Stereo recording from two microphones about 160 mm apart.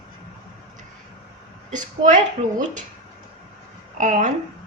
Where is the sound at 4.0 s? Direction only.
50° right (ahead or behind).